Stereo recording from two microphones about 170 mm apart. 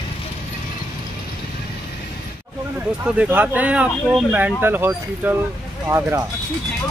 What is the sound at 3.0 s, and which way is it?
Speech, 10° right (ahead or behind).